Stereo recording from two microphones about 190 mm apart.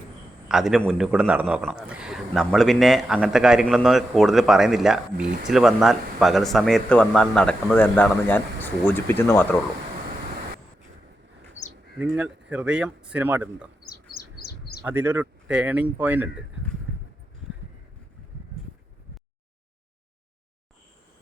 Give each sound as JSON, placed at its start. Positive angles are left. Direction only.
{"t": 0.4, "sound": "a man's voice", "side_deg": 0}
{"t": 5.2, "sound": "speech", "side_deg": -40}
{"t": 5.5, "sound": "a man's voice", "side_deg": 0}
{"t": 11.6, "sound": "bird", "side_deg": 40}
{"t": 11.9, "sound": "speech", "side_deg": -5}
{"t": 13.8, "sound": "bird", "side_deg": 55}
{"t": 14.8, "sound": "speech", "side_deg": -10}